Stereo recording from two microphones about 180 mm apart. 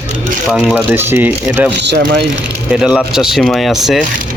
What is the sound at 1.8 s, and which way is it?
Speech, 70° right (ahead or behind).